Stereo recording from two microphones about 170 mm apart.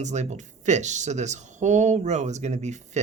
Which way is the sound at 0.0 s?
40° right (ahead or behind).